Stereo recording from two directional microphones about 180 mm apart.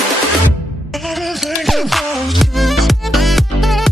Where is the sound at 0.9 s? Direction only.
Centre (ahead or behind).